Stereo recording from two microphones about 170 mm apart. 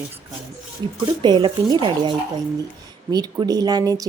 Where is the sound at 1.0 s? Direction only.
25° right (ahead or behind).